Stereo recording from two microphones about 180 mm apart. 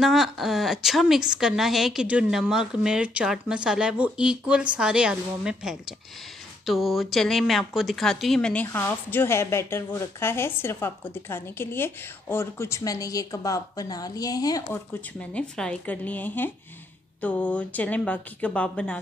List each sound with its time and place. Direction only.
0.0 s a woman's voice: centre (ahead or behind)